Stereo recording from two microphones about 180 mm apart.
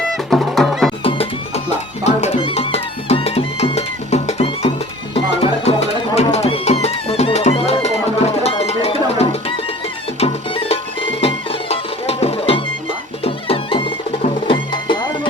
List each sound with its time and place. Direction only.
0.3 s music: centre (ahead or behind)
1.0 s music: 35° left (ahead or behind)